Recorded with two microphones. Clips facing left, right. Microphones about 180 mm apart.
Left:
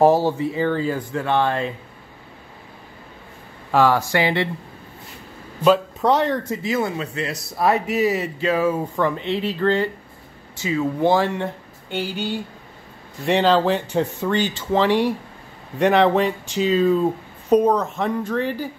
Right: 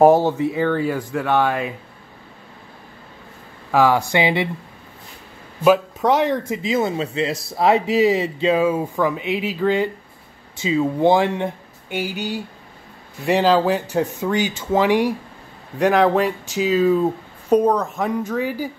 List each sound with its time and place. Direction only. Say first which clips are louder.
0.0 s speech: right 3 dB; 20° right (ahead or behind)
1.1 s speech: right 1 dB; 10° right (ahead or behind)
3.7 s speech: right 1 dB; 15° right (ahead or behind)
5.6 s speech: right 1 dB; 10° right (ahead or behind)
15.8 s speech: even; centre (ahead or behind)